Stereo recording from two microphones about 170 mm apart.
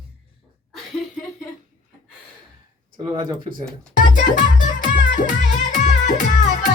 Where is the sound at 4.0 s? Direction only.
50° left (ahead or behind).